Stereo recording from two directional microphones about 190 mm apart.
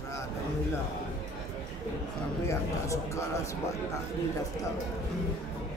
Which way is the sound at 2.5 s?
15° left (ahead or behind).